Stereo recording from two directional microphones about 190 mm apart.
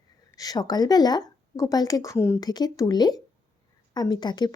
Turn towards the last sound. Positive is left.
turn(degrees=20)  # may be behind; listen again after turning